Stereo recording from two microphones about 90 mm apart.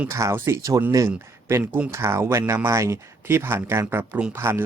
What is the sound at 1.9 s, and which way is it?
Speech, 30° right (ahead or behind).